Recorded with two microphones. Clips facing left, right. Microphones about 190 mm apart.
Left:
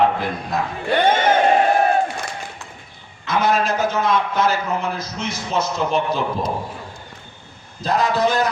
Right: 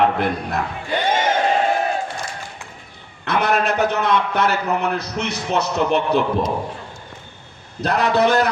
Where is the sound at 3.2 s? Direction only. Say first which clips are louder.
Even; 65° right (ahead or behind).